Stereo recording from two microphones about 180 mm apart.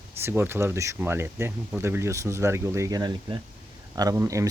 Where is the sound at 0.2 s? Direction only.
15° right (ahead or behind).